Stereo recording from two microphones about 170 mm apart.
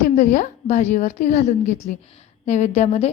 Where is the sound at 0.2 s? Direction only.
50° left (ahead or behind).